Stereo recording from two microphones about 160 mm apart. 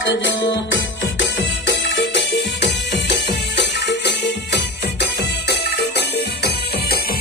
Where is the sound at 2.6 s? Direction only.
90° left.